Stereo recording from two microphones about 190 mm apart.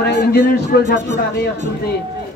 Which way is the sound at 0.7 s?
55° left (ahead or behind).